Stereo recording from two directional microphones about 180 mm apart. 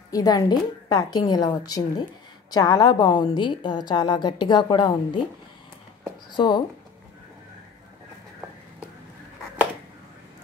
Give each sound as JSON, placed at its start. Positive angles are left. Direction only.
{"t": 0.1, "sound": "a woman's voice", "side_deg": 20}
{"t": 6.3, "sound": "a woman's voice", "side_deg": 25}